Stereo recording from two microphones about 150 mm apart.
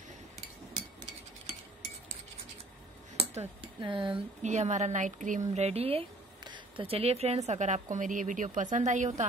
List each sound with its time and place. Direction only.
3.2 s speech: 35° right (ahead or behind)
4.4 s a woman's voice: 50° right (ahead or behind)
5.5 s a woman's voice: 45° right (ahead or behind)